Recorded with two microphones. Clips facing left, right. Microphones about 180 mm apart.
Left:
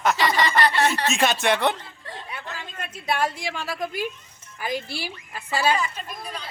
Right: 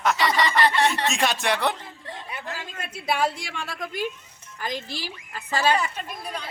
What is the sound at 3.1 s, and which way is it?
A woman's voice, centre (ahead or behind).